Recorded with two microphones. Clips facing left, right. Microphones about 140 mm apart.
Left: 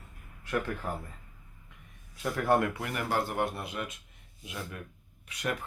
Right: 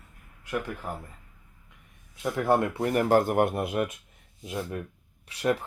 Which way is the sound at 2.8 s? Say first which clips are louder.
Right 9 dB; 40° right (ahead or behind).